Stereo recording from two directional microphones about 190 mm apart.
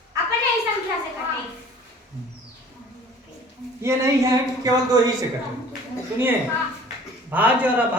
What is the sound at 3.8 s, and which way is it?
Speech, 15° right (ahead or behind).